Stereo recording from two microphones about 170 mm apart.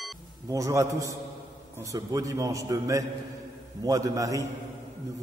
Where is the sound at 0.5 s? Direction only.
20° right (ahead or behind).